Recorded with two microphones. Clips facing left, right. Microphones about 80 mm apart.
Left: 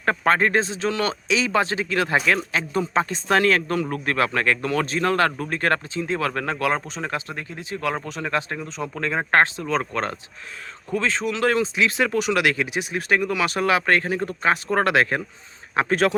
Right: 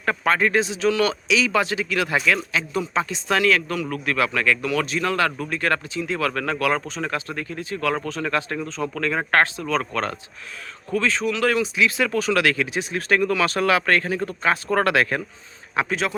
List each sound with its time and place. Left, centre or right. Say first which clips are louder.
0.0 s speech: left 1 dB; left